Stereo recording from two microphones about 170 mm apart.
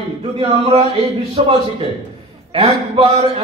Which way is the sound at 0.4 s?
35° right (ahead or behind).